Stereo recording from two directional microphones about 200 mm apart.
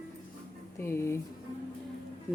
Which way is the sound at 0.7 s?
10° left (ahead or behind).